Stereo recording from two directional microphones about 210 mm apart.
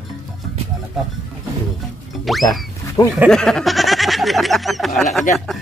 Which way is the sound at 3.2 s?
Centre (ahead or behind).